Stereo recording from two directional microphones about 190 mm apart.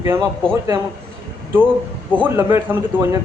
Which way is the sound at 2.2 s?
10° right (ahead or behind).